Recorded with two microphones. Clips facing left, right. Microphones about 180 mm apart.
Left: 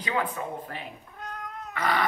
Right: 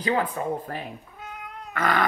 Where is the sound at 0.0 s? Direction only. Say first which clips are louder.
Right 4 dB; 35° right (ahead or behind).